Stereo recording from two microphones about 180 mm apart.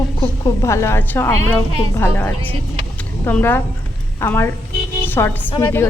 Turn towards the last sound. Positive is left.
turn(degrees=10)  # may be behind; listen again after turning